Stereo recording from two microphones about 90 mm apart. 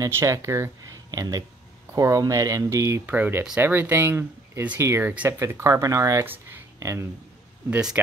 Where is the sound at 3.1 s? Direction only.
20° right (ahead or behind); by 6.2 s 40° right (ahead or behind).